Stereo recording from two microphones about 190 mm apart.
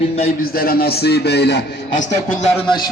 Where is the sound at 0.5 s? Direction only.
50° left (ahead or behind).